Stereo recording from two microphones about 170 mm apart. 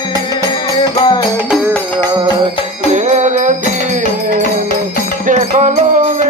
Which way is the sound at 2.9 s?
40° right (ahead or behind).